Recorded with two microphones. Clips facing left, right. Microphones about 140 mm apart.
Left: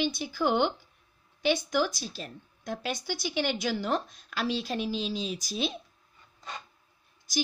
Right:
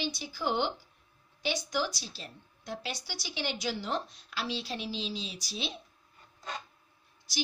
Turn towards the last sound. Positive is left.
turn(degrees=45)  # may be behind; listen again after turning